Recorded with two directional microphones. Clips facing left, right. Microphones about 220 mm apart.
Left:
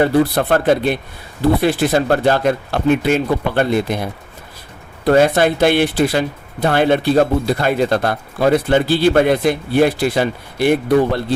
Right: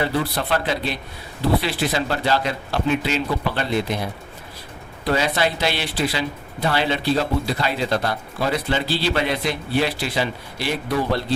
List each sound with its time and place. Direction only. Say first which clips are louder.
0.0 s speech: left 9 dB; 50° left (ahead or behind)
5.0 s speech: left 9 dB; 50° left (ahead or behind)